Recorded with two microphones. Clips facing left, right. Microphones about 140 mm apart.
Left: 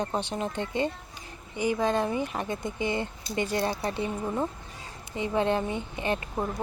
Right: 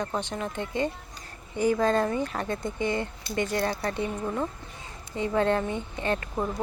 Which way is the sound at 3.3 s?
65° right (ahead or behind).